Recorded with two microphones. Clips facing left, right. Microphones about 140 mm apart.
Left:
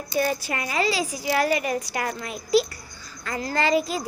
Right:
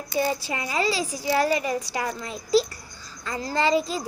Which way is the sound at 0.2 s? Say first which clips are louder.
Left 1 dB; 25° right (ahead or behind).